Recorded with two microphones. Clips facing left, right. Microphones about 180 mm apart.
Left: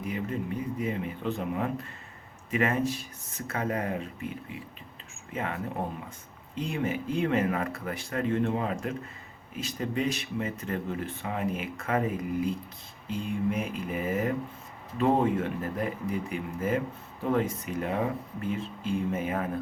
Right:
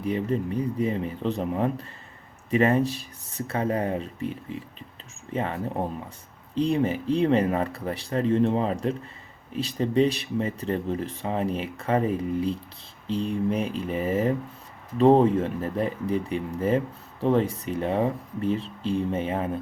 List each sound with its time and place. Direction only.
0.0 s speech: 35° right (ahead or behind)